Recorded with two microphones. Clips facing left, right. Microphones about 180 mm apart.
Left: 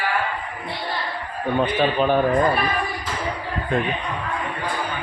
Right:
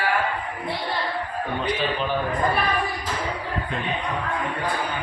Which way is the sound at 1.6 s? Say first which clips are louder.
Left 7 dB; 55° left (ahead or behind).